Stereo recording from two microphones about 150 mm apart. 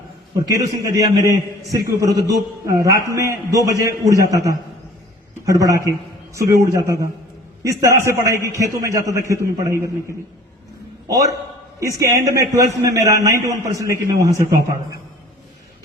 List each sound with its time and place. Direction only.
0.3 s a man's voice: 25° right (ahead or behind)
11.8 s a man's voice: 20° right (ahead or behind)